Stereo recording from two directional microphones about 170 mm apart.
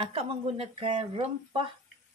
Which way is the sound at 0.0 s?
35° right (ahead or behind).